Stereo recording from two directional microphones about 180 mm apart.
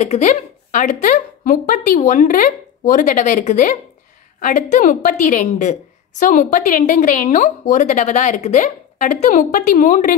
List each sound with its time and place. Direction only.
0.0 s a woman's voice: 40° left (ahead or behind)